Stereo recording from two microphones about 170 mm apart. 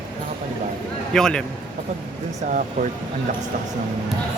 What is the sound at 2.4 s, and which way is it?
Speech, 45° right (ahead or behind).